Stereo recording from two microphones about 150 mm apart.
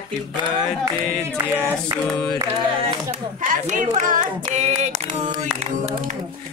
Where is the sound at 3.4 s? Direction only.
60° right (ahead or behind).